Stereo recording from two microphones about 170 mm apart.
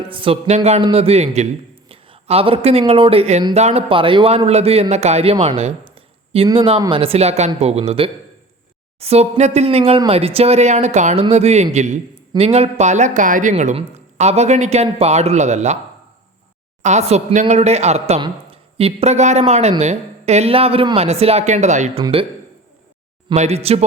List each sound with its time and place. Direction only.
0.1 s a man's voice: 30° right (ahead or behind)
16.8 s a man's voice: 40° right (ahead or behind)
22.0 s a man's voice: 30° right (ahead or behind)
23.3 s a man's voice: 40° right (ahead or behind)